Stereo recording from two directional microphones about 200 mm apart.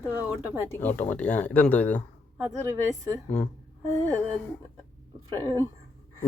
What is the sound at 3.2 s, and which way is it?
Speech, 5° left (ahead or behind).